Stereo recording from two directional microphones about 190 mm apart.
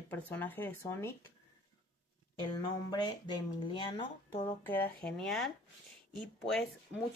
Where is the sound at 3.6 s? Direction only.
25° left (ahead or behind).